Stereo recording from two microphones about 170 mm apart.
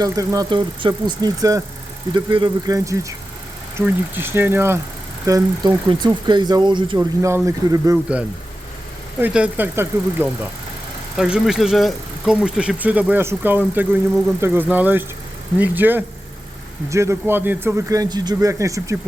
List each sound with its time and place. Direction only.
0.0 s a man's voice: 20° right (ahead or behind)
7.3 s a man's voice: 15° right (ahead or behind)
9.2 s a man's voice: 10° right (ahead or behind)